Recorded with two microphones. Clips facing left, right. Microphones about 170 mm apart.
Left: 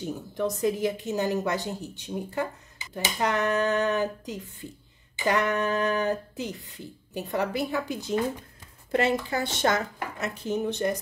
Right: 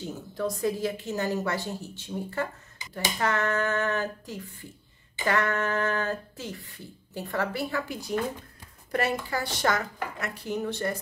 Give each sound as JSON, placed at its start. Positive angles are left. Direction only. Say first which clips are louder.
{"t": 0.0, "sound": "speech", "louder": "left 2 dB", "side_deg": 20}